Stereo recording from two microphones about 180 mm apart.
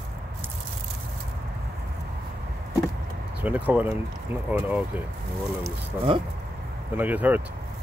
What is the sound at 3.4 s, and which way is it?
Speech, 10° right (ahead or behind).